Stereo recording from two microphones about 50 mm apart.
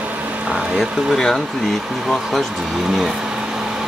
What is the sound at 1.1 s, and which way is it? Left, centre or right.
Speech, centre.